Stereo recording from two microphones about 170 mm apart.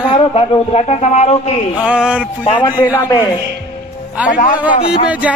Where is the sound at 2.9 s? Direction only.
20° left (ahead or behind).